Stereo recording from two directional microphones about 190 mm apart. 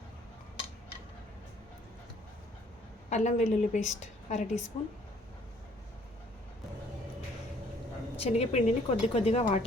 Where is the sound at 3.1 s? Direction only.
35° left (ahead or behind).